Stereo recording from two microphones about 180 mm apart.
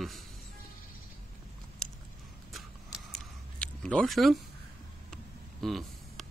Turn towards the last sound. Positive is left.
turn(degrees=0)  # may be behind; listen again after turning